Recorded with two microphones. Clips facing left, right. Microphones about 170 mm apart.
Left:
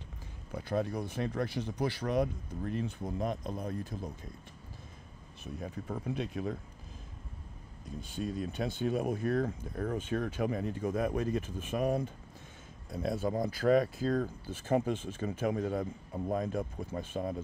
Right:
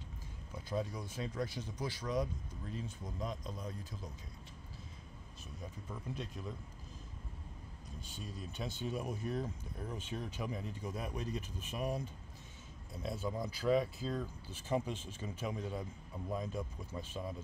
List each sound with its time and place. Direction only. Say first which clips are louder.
0.5 s speech: left 6 dB; 60° left (ahead or behind)
5.4 s speech: left 9 dB; 60° left (ahead or behind)
8.2 s speech: left 10 dB; 60° left (ahead or behind)